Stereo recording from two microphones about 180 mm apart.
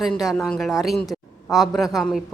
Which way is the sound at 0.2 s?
Centre (ahead or behind).